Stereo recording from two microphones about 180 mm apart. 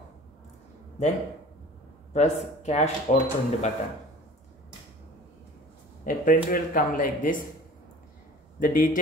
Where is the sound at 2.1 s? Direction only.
40° left (ahead or behind).